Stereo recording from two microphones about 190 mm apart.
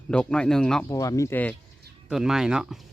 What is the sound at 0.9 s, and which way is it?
Speech, 15° left (ahead or behind).